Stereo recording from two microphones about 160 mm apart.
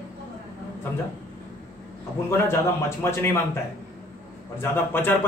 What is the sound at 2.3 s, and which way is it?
A man's voice, 15° left (ahead or behind).